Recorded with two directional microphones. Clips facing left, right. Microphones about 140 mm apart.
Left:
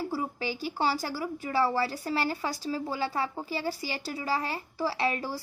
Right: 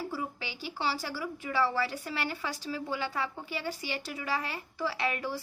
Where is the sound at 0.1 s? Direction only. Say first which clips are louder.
Left 5 dB; 40° left (ahead or behind).